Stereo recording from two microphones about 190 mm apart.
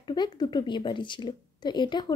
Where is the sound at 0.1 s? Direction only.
25° left (ahead or behind).